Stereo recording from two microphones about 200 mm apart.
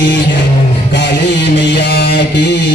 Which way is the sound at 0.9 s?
60° left (ahead or behind).